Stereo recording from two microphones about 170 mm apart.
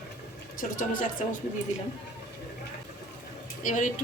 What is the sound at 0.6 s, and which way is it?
Speech, 50° left (ahead or behind).